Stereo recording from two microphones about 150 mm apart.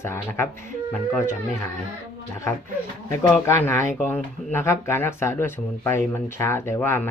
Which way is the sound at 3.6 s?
15° left (ahead or behind).